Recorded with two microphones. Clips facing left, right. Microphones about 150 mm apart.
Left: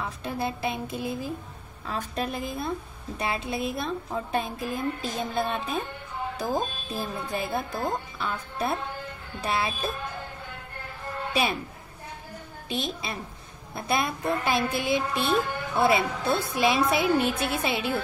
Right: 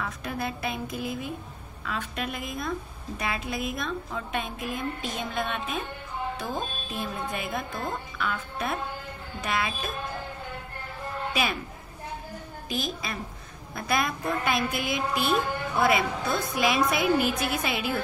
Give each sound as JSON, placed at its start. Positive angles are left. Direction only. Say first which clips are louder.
{"t": 0.0, "sound": "a woman's voice", "louder": "left 2 dB", "side_deg": 25}
{"t": 12.6, "sound": "a woman's voice", "louder": "left 1 dB", "side_deg": 25}